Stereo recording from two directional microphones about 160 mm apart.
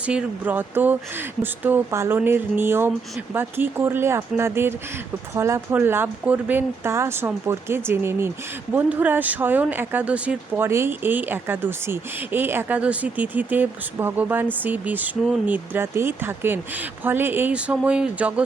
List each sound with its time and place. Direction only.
0.0 s speech: 5° right (ahead or behind)